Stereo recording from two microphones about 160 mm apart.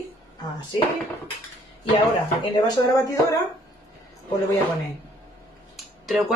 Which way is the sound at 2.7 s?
20° left (ahead or behind).